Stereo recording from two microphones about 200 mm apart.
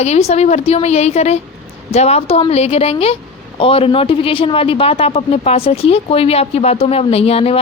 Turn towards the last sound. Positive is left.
turn(degrees=30)  # may be behind; listen again after turning